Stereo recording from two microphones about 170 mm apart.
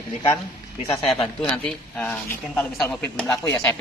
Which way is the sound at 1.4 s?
5° left (ahead or behind).